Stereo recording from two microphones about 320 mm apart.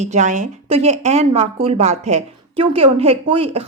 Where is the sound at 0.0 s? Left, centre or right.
Right.